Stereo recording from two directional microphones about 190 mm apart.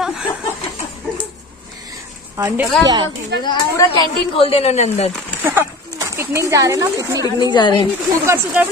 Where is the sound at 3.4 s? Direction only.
25° left (ahead or behind).